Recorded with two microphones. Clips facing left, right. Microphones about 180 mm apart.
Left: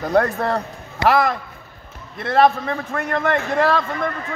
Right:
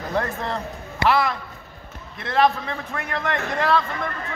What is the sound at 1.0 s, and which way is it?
A man's voice, 45° left (ahead or behind).